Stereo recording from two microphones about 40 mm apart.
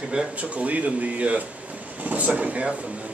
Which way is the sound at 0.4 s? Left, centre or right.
Right.